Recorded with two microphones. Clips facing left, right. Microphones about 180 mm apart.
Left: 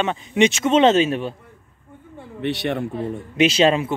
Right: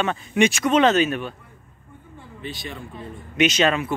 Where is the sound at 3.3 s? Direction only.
30° left (ahead or behind).